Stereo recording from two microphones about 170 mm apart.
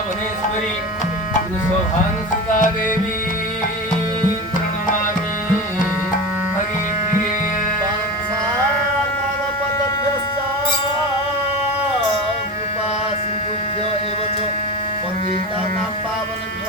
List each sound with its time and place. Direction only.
2.5 s tabla: 50° left (ahead or behind)